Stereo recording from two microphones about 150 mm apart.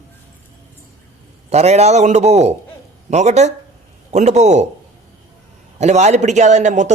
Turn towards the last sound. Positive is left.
turn(degrees=-55)  # may be behind; listen again after turning